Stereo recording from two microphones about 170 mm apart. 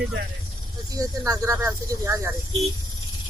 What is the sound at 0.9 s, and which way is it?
Speech, 20° right (ahead or behind).